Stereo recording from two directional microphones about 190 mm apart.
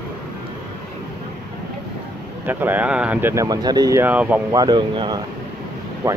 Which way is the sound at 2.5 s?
10° right (ahead or behind).